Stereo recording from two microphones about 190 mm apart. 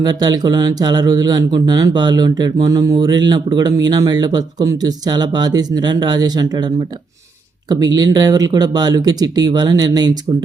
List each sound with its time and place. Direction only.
0.0 s speech: 20° right (ahead or behind)